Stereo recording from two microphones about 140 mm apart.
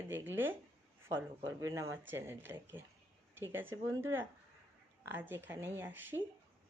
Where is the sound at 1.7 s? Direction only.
20° right (ahead or behind).